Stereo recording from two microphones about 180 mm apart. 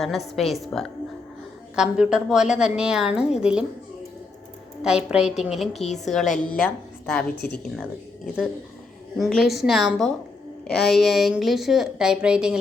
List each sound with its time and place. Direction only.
0.0 s a woman's voice: centre (ahead or behind)
4.8 s a woman's voice: 5° right (ahead or behind)
9.1 s a woman's voice: centre (ahead or behind)